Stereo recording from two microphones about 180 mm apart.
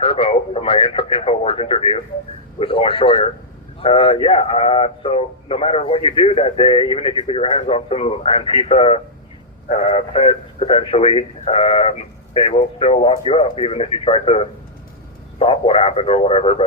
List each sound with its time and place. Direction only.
0.0 s a man's voice: 30° left (ahead or behind)